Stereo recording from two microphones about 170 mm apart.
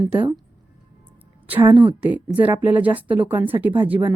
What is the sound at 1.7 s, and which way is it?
Speech, 30° right (ahead or behind).